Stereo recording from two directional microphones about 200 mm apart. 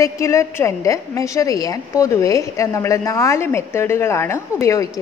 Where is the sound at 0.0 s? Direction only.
15° left (ahead or behind).